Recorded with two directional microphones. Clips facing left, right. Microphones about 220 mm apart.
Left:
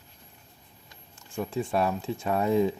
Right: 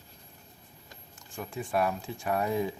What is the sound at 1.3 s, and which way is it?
Speech, 25° left (ahead or behind).